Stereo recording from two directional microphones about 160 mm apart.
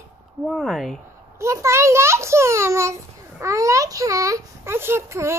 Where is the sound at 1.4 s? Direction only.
20° right (ahead or behind).